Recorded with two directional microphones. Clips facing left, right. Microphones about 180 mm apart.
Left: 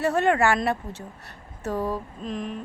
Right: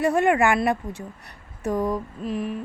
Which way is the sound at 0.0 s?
10° right (ahead or behind).